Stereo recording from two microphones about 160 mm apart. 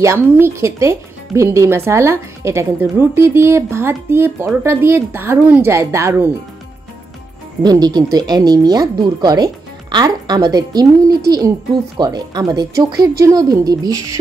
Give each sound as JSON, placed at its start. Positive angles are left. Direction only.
{"t": 0.0, "sound": "speech", "side_deg": -15}
{"t": 7.6, "sound": "speech", "side_deg": -25}